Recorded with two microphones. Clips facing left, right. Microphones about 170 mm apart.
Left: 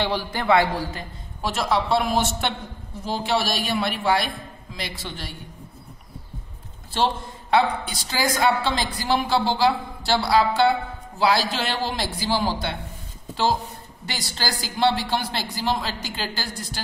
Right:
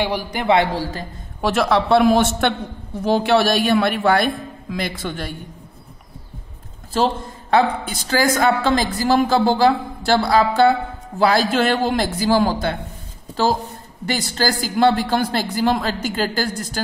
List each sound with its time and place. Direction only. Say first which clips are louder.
0.0 s a man's voice: right 3 dB; 15° right (ahead or behind)
1.4 s a woman's voice: right 6 dB; 65° right (ahead or behind)
7.5 s a woman's voice: right 3 dB; 50° right (ahead or behind)
14.3 s a woman's voice: right 7 dB; 45° right (ahead or behind)